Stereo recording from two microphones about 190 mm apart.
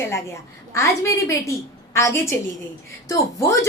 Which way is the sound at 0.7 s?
15° left (ahead or behind).